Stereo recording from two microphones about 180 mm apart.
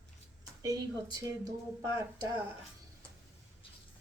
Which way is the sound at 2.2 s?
15° right (ahead or behind).